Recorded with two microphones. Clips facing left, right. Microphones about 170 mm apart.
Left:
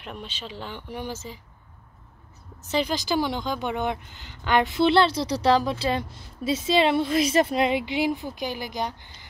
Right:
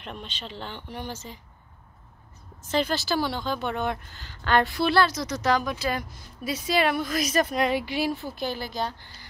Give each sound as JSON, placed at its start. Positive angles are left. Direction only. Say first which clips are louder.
{"t": 0.0, "sound": "speech", "louder": "left 1 dB", "side_deg": 10}
{"t": 2.7, "sound": "speech", "louder": "left 1 dB", "side_deg": 15}